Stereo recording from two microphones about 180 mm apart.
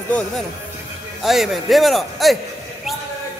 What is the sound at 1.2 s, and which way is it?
A man's voice, centre (ahead or behind).